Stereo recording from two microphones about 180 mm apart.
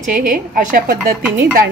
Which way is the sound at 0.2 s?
50° right (ahead or behind).